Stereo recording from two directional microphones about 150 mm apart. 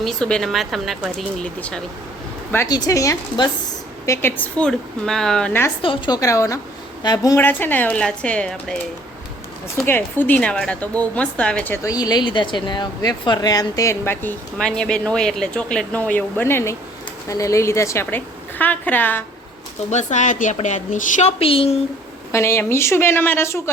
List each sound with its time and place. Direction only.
0.0 s speech: 5° left (ahead or behind)
2.6 s speech: 25° left (ahead or behind); by 5.5 s 5° left (ahead or behind)
5.8 s a woman's voice: 35° left (ahead or behind)
6.1 s speech: 20° left (ahead or behind)
7.3 s speech: 15° left (ahead or behind)
9.8 s speech: 15° left (ahead or behind)
19.9 s a woman's voice: 50° left (ahead or behind)
22.3 s speech: 20° left (ahead or behind)